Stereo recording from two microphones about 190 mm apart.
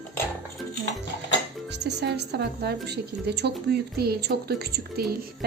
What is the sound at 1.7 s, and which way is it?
A woman's voice, 60° right (ahead or behind).